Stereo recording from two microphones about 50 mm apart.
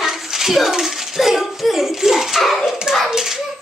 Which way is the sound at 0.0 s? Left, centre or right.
Centre.